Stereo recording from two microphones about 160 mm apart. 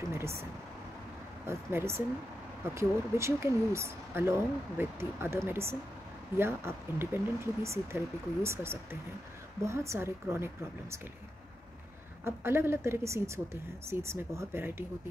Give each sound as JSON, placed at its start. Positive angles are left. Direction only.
{"t": 1.5, "sound": "speech", "side_deg": -15}
{"t": 12.3, "sound": "speech", "side_deg": -15}